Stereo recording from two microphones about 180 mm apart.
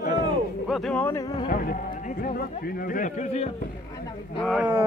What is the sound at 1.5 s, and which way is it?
A man's voice, 50° left (ahead or behind).